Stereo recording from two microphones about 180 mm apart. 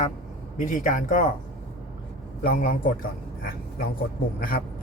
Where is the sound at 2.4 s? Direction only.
50° left (ahead or behind).